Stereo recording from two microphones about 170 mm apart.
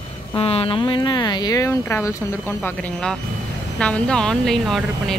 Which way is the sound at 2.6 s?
5° left (ahead or behind).